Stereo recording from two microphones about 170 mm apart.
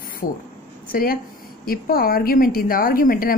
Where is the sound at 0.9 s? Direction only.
60° left (ahead or behind).